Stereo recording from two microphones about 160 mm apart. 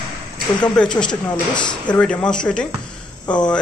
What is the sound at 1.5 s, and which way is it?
Speech, 30° left (ahead or behind).